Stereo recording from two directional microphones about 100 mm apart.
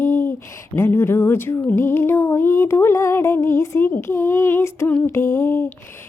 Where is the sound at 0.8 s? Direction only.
25° left (ahead or behind).